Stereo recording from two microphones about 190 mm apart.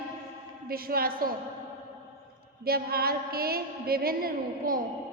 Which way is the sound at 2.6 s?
55° right (ahead or behind).